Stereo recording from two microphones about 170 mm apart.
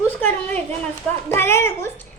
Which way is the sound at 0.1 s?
10° left (ahead or behind).